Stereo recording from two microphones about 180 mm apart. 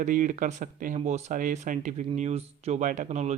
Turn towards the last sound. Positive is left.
turn(degrees=-40)  # may be behind; listen again after turning